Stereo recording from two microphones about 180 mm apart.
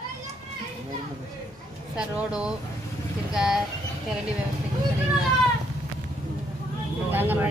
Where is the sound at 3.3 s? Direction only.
5° right (ahead or behind).